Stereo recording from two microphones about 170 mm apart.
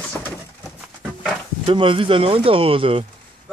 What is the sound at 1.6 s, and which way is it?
Speech, 30° right (ahead or behind).